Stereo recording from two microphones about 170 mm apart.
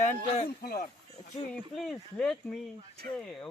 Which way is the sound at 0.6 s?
65° left (ahead or behind).